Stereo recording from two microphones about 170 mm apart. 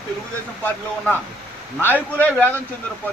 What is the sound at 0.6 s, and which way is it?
A man's voice, 10° left (ahead or behind).